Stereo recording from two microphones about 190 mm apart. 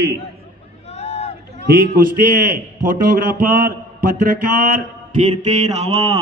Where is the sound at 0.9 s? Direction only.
35° left (ahead or behind).